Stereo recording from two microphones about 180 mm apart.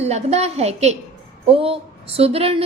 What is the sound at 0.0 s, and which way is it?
A woman's voice, 35° right (ahead or behind).